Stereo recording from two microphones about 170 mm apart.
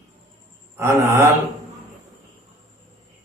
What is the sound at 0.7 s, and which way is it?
Speech, 15° right (ahead or behind).